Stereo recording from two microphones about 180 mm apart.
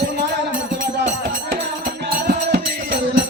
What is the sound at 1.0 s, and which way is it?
Music, 50° right (ahead or behind).